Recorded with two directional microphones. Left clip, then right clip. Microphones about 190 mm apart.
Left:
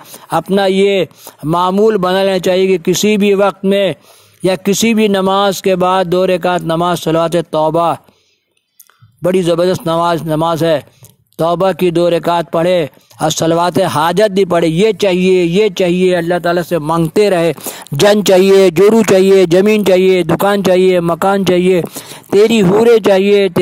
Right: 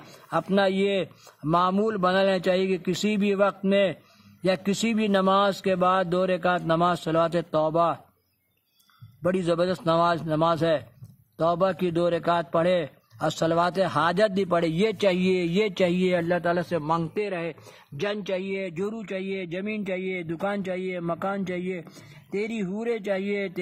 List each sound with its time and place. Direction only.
0.6 s speech: 35° left (ahead or behind)
9.2 s speech: 35° left (ahead or behind)